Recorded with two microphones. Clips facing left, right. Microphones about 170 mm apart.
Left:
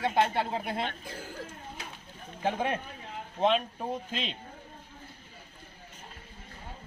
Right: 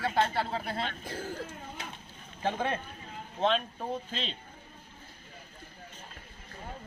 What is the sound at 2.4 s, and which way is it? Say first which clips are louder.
A man's voice: left 1 dB; 15° left (ahead or behind).